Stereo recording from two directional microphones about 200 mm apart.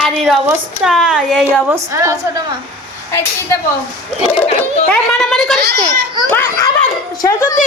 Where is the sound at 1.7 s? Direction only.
15° right (ahead or behind).